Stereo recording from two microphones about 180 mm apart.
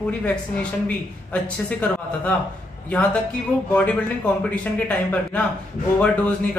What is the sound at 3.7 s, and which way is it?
Speech, 5° left (ahead or behind).